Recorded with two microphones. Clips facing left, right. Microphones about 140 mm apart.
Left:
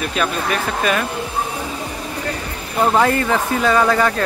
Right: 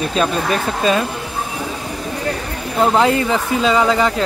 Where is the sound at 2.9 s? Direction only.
15° right (ahead or behind).